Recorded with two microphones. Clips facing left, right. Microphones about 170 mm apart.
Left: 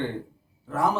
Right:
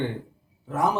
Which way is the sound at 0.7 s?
15° right (ahead or behind).